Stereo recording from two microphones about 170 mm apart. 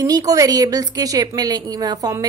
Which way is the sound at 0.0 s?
20° right (ahead or behind).